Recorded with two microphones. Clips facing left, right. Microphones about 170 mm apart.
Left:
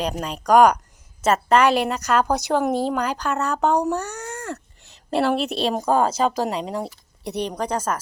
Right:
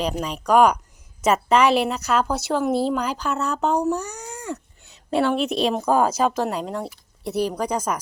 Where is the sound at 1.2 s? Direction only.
10° right (ahead or behind).